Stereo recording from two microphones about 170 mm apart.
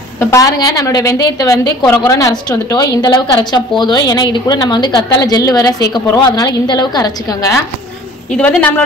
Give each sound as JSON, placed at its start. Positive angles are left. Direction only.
{"t": 0.3, "sound": "a woman's voice", "side_deg": 20}
{"t": 8.3, "sound": "speech", "side_deg": 5}